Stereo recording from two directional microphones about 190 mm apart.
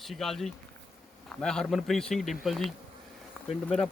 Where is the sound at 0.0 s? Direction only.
Centre (ahead or behind).